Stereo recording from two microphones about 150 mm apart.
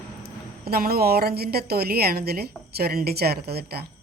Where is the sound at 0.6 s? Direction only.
90° right.